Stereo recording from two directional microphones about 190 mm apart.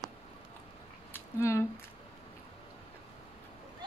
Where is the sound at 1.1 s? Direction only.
15° left (ahead or behind).